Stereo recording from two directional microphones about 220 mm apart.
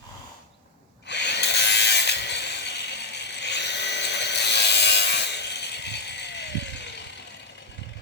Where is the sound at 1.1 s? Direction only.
50° left (ahead or behind).